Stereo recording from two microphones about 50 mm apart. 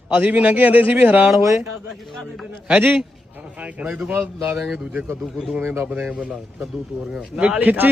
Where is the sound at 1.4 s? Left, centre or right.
Right.